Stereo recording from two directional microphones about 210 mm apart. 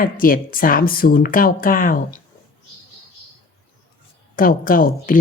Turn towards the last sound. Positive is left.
turn(degrees=40)  # may be behind; listen again after turning